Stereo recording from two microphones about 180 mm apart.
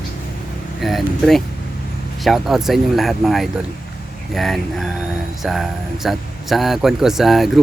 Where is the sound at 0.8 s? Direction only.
Centre (ahead or behind).